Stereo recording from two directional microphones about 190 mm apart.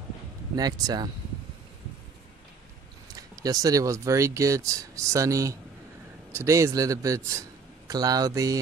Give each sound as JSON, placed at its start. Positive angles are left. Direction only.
{"t": 0.6, "sound": "speech", "side_deg": -20}
{"t": 3.2, "sound": "speech", "side_deg": -20}